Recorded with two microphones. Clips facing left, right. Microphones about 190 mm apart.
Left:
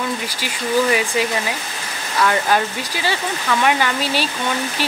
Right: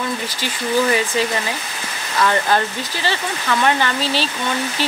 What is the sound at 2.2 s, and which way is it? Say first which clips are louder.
Speech: even; 5° left (ahead or behind).